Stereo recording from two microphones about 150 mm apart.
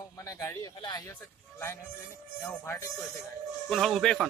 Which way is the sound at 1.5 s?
15° left (ahead or behind).